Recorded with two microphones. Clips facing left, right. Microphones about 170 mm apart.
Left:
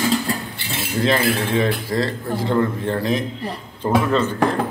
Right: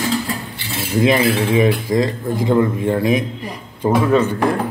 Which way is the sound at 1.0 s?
10° right (ahead or behind).